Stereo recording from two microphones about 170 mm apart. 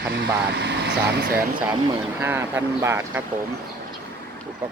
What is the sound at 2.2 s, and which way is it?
Speech, 15° right (ahead or behind).